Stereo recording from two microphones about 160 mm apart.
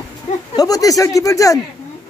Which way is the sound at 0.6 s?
20° left (ahead or behind).